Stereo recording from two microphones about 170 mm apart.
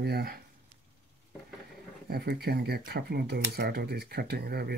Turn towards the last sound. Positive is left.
turn(degrees=-70)  # may be behind; listen again after turning